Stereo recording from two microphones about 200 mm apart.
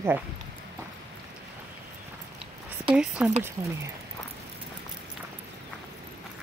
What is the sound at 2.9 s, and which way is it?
Speech, 5° right (ahead or behind).